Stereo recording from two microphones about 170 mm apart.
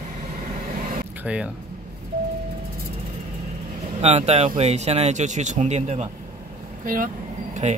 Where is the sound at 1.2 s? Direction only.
5° right (ahead or behind).